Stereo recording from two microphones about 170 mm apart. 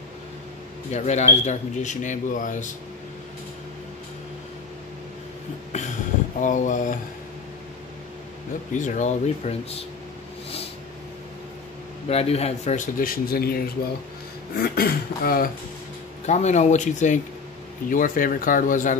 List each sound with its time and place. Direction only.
0.9 s speech: 40° left (ahead or behind)
6.4 s speech: 50° left (ahead or behind)
8.7 s speech: 45° left (ahead or behind)
12.1 s speech: 35° left (ahead or behind); by 15.5 s 60° left (ahead or behind)
16.3 s speech: 40° left (ahead or behind)